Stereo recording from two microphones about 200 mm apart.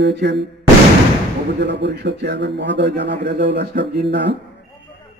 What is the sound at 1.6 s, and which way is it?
Speech, 60° right (ahead or behind).